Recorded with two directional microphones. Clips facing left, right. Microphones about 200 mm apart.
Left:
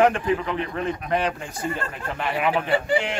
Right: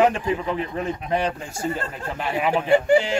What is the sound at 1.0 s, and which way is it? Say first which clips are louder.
Speech: right 1 dB; 25° right (ahead or behind).